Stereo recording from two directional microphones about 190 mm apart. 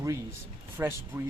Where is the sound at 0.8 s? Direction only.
15° right (ahead or behind).